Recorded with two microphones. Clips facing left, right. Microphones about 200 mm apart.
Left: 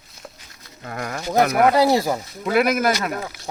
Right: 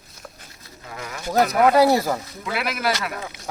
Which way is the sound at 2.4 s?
45° left (ahead or behind).